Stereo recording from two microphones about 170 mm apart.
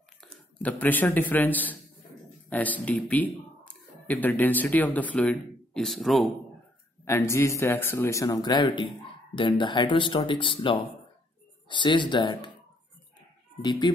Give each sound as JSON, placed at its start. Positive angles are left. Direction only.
{"t": 0.2, "sound": "a man's voice", "side_deg": 10}
{"t": 7.1, "sound": "speech", "side_deg": 15}
{"t": 13.6, "sound": "speech", "side_deg": 25}